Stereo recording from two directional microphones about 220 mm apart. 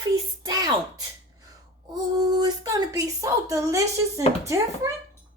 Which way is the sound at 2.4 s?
15° right (ahead or behind).